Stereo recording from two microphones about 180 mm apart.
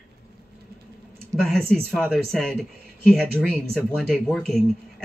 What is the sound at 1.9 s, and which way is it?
Speech, centre (ahead or behind).